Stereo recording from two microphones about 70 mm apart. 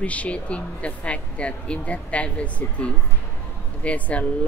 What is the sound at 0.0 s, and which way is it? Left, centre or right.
Speech, centre.